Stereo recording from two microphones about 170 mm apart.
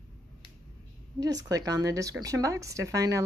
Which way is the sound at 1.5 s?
20° right (ahead or behind).